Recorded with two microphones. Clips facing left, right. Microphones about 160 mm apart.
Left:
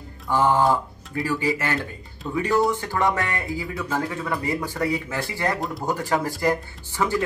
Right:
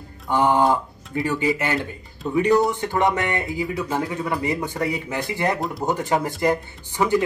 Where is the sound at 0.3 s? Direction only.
20° right (ahead or behind).